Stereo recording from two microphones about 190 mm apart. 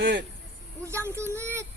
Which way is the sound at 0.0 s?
70° right (ahead or behind).